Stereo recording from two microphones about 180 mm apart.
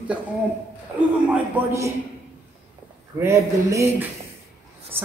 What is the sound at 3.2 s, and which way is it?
Speech, 15° right (ahead or behind).